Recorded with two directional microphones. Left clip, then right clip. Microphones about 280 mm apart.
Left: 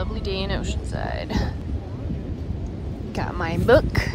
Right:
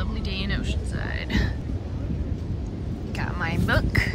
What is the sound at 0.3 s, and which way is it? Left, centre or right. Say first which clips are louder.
Cattle: left 3 dB; centre.